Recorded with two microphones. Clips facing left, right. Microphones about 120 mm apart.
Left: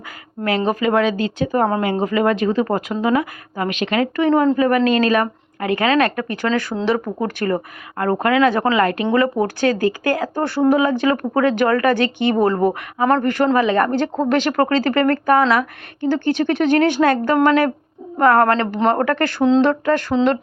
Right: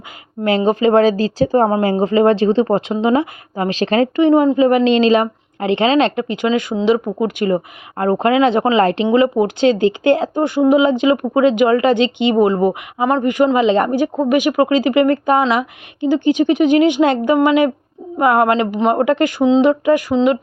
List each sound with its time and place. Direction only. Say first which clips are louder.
0.4 s speech: right 5 dB; 25° right (ahead or behind)
4.3 s speech: right 2 dB; 15° right (ahead or behind)